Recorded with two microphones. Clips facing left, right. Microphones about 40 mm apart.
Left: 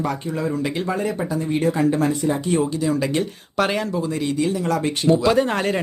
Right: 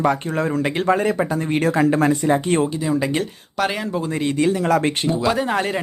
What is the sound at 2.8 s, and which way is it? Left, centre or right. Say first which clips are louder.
Speech: right 1 dB; centre.